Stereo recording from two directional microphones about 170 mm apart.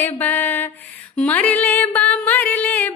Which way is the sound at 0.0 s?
10° left (ahead or behind).